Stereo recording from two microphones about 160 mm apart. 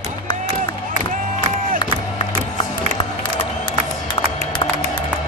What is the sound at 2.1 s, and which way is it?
Music, 30° left (ahead or behind).